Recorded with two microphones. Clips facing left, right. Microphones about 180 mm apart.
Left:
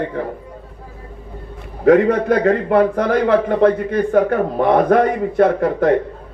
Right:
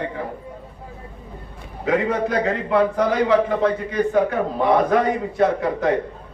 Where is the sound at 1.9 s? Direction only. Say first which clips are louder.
Left 8 dB; 55° left (ahead or behind).